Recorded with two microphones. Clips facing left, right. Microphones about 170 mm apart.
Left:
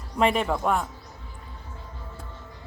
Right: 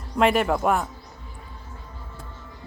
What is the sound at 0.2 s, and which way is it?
Speech, centre (ahead or behind).